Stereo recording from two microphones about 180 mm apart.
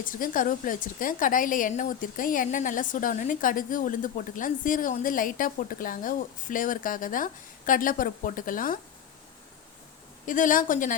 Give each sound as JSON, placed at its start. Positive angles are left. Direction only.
{"t": 0.0, "sound": "speech", "side_deg": 50}
{"t": 10.2, "sound": "speech", "side_deg": 45}